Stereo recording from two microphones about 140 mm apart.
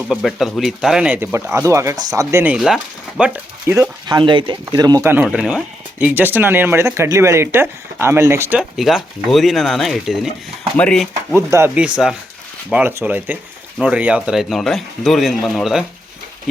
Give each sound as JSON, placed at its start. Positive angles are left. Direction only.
{"t": 0.1, "sound": "speech", "side_deg": 0}
{"t": 2.6, "sound": "speech", "side_deg": 0}
{"t": 4.1, "sound": "speech", "side_deg": -35}
{"t": 5.2, "sound": "speech", "side_deg": -5}
{"t": 8.5, "sound": "speech", "side_deg": 0}
{"t": 11.3, "sound": "speech", "side_deg": -20}